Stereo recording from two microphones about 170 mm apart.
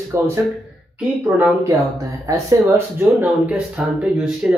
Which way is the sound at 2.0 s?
20° right (ahead or behind).